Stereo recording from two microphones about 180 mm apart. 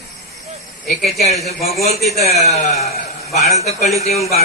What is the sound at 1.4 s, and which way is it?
A man's voice, 35° left (ahead or behind).